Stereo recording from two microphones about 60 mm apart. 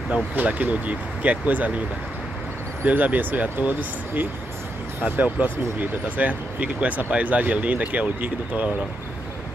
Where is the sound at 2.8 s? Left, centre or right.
Right.